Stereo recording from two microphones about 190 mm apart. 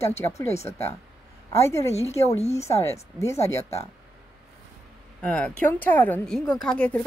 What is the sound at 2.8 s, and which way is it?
Speech, 15° left (ahead or behind).